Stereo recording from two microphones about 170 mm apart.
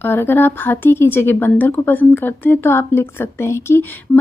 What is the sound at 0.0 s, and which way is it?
Speech, 15° left (ahead or behind).